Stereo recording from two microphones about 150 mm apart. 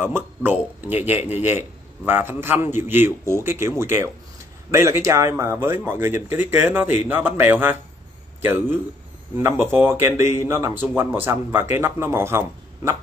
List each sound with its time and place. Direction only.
0.0 s a man's voice: 15° right (ahead or behind)